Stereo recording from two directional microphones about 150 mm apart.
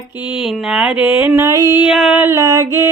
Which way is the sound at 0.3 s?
5° right (ahead or behind).